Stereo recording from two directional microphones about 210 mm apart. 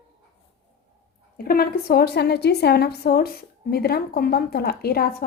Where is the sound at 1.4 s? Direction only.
45° left (ahead or behind).